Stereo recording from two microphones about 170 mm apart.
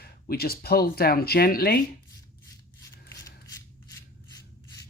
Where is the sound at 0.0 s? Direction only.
65° left (ahead or behind).